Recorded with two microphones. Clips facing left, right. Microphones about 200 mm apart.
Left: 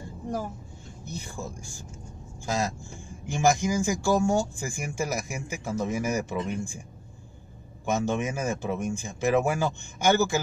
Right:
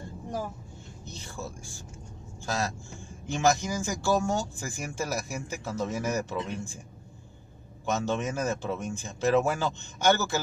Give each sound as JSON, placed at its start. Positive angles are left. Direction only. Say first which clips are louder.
{"t": 1.0, "sound": "speech", "louder": "left 3 dB", "side_deg": 10}
{"t": 7.8, "sound": "speech", "louder": "left 2 dB", "side_deg": 15}